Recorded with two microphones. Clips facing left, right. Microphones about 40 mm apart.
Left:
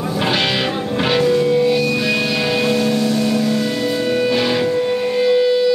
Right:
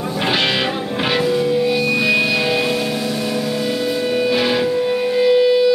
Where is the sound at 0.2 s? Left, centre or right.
Centre.